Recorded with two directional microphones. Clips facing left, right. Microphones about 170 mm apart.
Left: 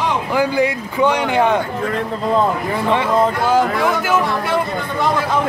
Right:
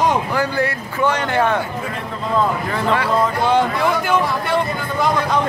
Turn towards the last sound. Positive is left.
turn(degrees=5)  # may be behind; listen again after turning